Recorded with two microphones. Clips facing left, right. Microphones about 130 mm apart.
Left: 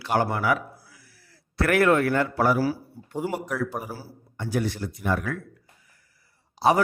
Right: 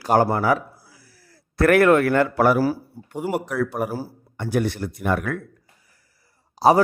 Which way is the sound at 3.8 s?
55° right (ahead or behind).